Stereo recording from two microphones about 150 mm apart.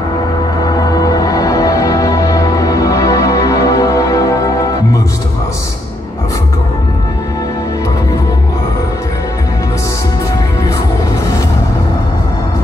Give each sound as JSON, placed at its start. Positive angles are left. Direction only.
{"t": 0.7, "sound": "music", "side_deg": 25}